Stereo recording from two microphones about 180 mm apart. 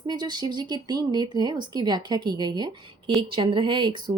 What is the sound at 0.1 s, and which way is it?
Speech, 25° right (ahead or behind).